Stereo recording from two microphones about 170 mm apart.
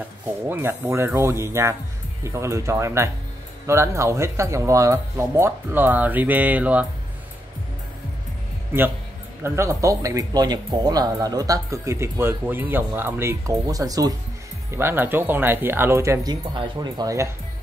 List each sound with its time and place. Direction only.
0.5 s speech: 15° right (ahead or behind)
9.4 s speech: 15° right (ahead or behind)